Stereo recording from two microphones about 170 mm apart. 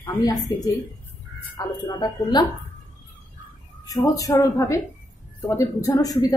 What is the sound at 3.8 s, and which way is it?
Speech, 20° left (ahead or behind).